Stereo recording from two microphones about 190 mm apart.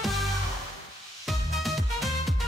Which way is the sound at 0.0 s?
Centre (ahead or behind).